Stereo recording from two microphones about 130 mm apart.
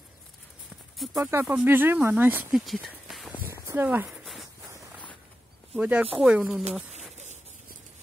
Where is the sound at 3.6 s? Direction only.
15° right (ahead or behind).